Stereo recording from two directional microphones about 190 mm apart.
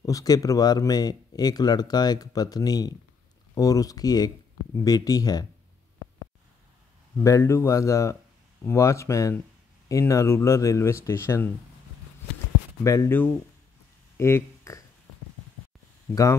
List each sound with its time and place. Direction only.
0.0 s speech: 20° left (ahead or behind)
7.2 s speech: 15° left (ahead or behind)
12.8 s speech: 15° left (ahead or behind)
14.1 s a sound: 15° left (ahead or behind)